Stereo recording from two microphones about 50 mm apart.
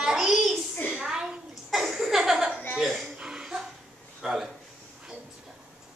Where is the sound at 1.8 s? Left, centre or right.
Centre.